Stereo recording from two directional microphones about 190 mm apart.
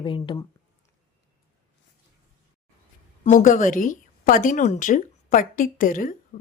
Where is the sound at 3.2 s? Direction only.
40° left (ahead or behind).